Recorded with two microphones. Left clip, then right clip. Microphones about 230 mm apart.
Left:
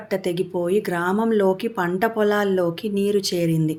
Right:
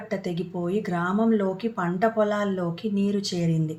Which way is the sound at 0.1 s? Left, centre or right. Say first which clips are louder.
Left 8 dB; left.